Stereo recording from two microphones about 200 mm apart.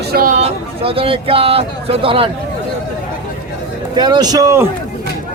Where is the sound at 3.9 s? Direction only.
20° right (ahead or behind).